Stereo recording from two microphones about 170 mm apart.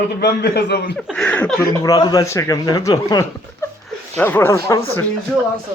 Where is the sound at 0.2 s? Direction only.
70° left (ahead or behind).